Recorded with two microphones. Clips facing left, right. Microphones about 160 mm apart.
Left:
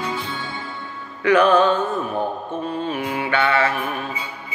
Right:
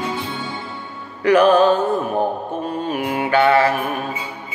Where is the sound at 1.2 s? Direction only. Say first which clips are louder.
Right 2 dB; 35° right (ahead or behind).